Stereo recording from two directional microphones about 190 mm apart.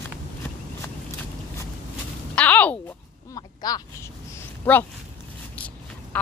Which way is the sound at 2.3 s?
5° left (ahead or behind).